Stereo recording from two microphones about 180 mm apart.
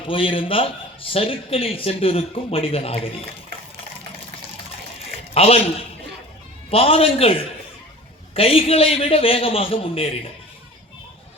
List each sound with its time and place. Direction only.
0.0 s a man's voice: 30° left (ahead or behind)
5.3 s a man's voice: 35° left (ahead or behind)